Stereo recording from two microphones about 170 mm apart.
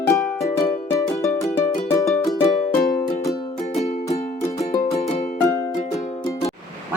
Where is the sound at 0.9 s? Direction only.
20° left (ahead or behind).